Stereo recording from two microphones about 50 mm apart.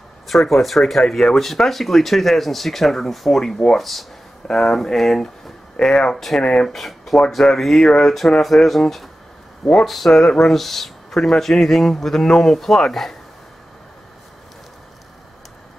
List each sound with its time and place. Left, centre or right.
0.3 s speech: centre
6.4 s speech: left
6.7 s speech: centre